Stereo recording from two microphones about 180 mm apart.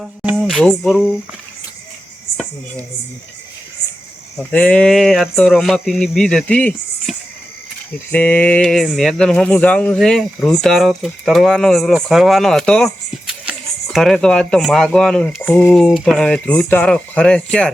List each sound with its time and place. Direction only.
0.0 s speech: 5° right (ahead or behind)
4.5 s speech: 5° left (ahead or behind)